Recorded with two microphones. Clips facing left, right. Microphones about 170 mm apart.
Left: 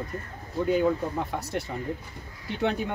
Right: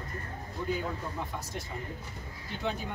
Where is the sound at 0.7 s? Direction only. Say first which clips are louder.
Left 11 dB; 65° left (ahead or behind).